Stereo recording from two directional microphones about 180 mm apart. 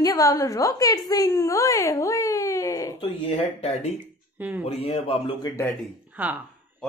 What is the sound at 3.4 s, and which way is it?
A man's voice, 35° left (ahead or behind).